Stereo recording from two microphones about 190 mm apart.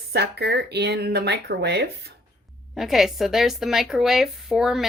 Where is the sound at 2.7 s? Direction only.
Centre (ahead or behind).